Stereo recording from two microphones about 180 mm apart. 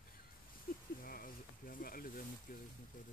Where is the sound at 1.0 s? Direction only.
50° left (ahead or behind).